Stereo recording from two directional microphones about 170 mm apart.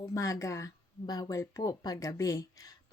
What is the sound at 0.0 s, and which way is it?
Speech, 20° left (ahead or behind).